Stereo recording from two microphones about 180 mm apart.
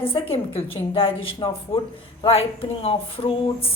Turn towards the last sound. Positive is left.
turn(degrees=30)  # may be behind; listen again after turning